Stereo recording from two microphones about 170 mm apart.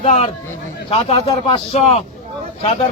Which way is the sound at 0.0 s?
40° left (ahead or behind).